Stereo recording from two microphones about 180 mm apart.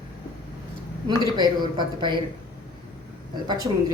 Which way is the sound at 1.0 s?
25° right (ahead or behind).